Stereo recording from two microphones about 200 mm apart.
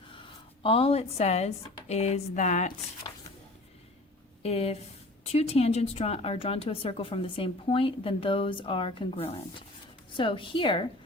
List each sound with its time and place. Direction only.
0.1 s speech: 25° left (ahead or behind)
4.4 s a woman's voice: 30° left (ahead or behind)